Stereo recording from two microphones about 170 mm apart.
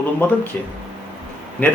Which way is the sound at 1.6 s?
10° left (ahead or behind).